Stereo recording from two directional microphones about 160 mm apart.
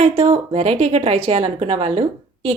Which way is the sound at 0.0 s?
40° right (ahead or behind).